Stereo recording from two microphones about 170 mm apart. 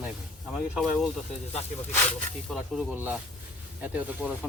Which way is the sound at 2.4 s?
Centre (ahead or behind).